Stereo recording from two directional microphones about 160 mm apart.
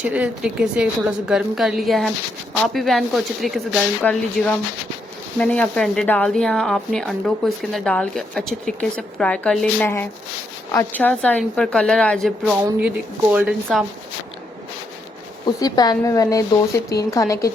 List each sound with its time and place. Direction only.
0.0 s speech: 5° right (ahead or behind)
10.9 s speech: 10° left (ahead or behind)
15.4 s speech: 25° left (ahead or behind)